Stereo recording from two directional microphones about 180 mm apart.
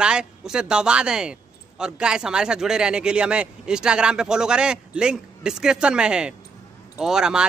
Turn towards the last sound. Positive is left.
turn(degrees=-5)  # may be behind; listen again after turning